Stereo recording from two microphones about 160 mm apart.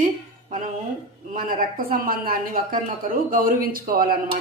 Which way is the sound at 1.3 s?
65° right (ahead or behind).